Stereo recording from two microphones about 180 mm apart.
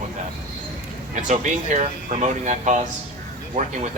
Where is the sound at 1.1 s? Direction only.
40° right (ahead or behind).